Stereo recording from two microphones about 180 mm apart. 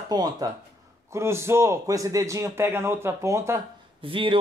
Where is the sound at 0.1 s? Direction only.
20° right (ahead or behind).